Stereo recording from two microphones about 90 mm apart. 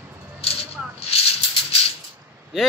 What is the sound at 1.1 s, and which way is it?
Maraca, 90° left.